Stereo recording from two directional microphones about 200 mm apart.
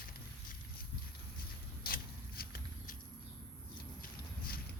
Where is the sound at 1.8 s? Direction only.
50° left (ahead or behind).